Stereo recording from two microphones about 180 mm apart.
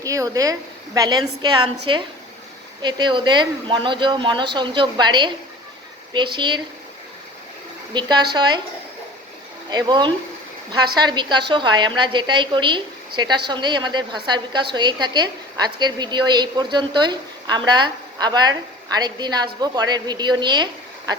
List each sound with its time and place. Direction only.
0.0 s a woman's voice: 20° right (ahead or behind)
7.9 s a woman's voice: 25° right (ahead or behind)
9.6 s a woman's voice: 25° right (ahead or behind)